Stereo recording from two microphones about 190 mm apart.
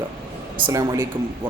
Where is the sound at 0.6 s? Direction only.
15° right (ahead or behind).